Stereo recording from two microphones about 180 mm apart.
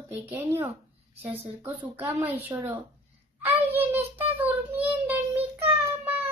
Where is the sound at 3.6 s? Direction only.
10° right (ahead or behind).